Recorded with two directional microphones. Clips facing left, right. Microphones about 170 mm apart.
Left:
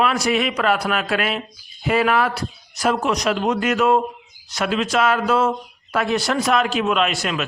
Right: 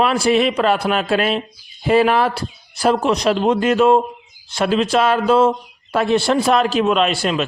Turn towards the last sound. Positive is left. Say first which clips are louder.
# right 4 dB
turn(degrees=-30)  # may be behind; listen again after turning